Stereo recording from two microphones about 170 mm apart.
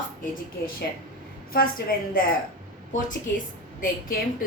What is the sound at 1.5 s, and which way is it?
A woman's voice, 60° left (ahead or behind).